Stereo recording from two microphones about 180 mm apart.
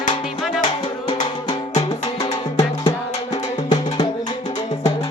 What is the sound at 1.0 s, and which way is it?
Music, 25° left (ahead or behind).